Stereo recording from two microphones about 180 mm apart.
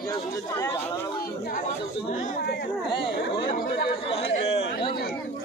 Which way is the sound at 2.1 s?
45° left (ahead or behind).